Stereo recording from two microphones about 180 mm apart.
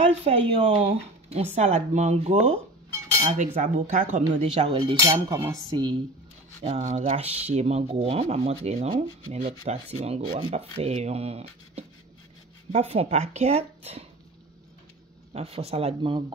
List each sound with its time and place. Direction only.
0.0 s speech: 35° right (ahead or behind)
4.7 s cutlery: 20° right (ahead or behind)
6.6 s speech: 40° right (ahead or behind)
15.3 s speech: 35° right (ahead or behind)